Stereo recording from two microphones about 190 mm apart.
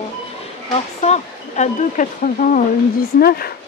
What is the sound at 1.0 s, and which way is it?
Speech, 35° left (ahead or behind).